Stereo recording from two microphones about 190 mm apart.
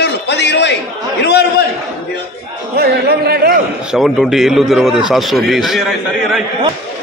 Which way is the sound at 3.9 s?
Centre (ahead or behind).